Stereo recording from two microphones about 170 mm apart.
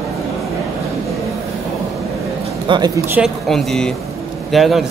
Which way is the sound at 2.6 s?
25° right (ahead or behind).